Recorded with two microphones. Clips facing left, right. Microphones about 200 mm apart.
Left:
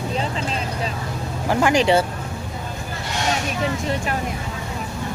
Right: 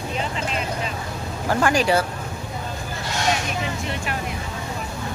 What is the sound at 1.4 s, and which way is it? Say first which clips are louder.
Speech: left 2 dB; 20° left (ahead or behind).